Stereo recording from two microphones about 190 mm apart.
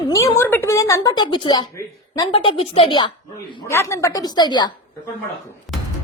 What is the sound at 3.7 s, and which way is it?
A woman's voice, 15° left (ahead or behind).